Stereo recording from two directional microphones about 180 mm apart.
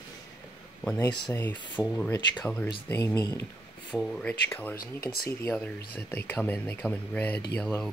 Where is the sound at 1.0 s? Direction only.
25° left (ahead or behind).